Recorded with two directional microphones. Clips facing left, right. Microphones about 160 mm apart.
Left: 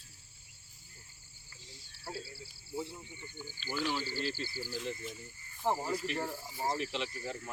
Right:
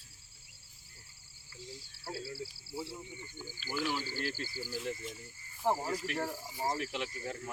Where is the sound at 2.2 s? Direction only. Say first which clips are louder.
Right 8 dB; 85° right.